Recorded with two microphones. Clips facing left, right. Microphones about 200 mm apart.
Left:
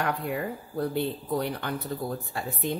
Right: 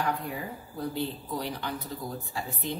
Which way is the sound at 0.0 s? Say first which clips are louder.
Left 3 dB; 65° left (ahead or behind).